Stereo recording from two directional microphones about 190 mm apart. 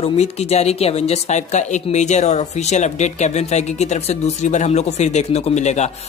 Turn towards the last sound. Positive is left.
turn(degrees=35)  # may be behind; listen again after turning